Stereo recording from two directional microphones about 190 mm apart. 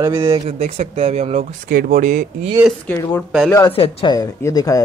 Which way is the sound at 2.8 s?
15° left (ahead or behind).